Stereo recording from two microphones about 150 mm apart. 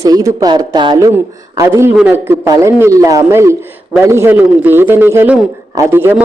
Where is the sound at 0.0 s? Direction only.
20° right (ahead or behind).